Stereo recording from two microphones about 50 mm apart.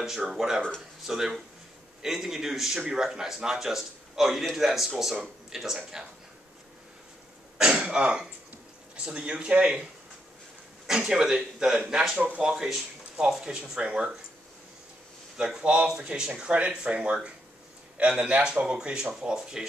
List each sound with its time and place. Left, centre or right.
0.0 s a man's voice: centre
0.6 s speech: centre
1.0 s a man's voice: centre
7.5 s speech: centre
10.9 s a man's voice: centre
12.2 s a man's voice: centre
15.3 s a man's voice: centre